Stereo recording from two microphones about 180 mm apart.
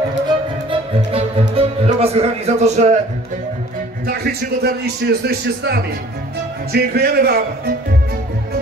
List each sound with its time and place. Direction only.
0.7 s music: 30° right (ahead or behind)
4.1 s a man's voice: 60° right (ahead or behind)